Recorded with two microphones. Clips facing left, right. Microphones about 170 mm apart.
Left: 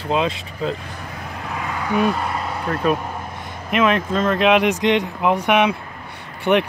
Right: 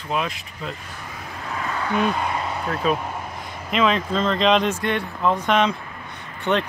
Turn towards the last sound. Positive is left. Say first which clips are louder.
# left 5 dB
turn(degrees=10)  # may be behind; listen again after turning